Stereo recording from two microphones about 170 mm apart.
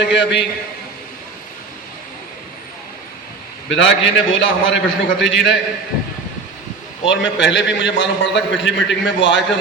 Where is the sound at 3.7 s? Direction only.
90° left.